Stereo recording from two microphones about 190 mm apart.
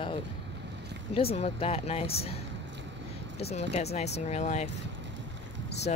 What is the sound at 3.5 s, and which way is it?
Speech, 35° left (ahead or behind).